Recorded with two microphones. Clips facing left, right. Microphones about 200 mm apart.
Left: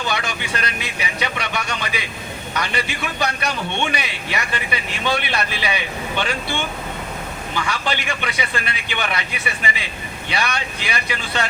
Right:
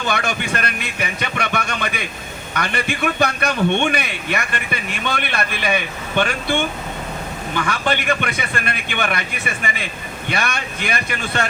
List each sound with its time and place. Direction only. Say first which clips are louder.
0.1 s a man's voice: right 3 dB; 50° right (ahead or behind)
7.7 s a man's voice: right 6 dB; 50° right (ahead or behind)